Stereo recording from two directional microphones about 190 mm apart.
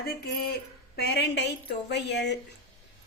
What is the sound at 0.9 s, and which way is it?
Speech, 60° left (ahead or behind).